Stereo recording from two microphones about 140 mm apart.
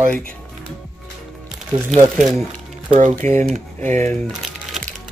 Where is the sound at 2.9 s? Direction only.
60° right (ahead or behind).